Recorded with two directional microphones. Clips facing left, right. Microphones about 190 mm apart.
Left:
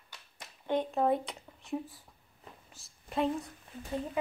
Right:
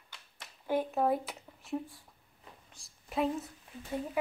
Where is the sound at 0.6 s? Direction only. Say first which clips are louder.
Left 1 dB; 5° right (ahead or behind).